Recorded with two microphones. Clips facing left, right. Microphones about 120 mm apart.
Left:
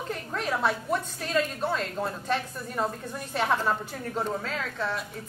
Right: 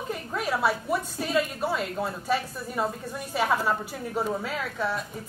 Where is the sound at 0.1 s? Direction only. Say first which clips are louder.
Right 2 dB; 10° right (ahead or behind).